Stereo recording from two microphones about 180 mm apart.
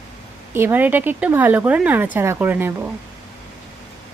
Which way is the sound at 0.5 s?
10° right (ahead or behind).